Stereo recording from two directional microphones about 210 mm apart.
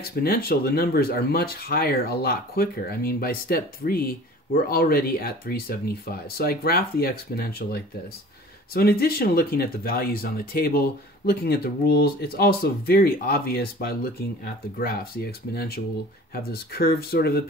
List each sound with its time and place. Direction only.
0.2 s speech: 45° left (ahead or behind)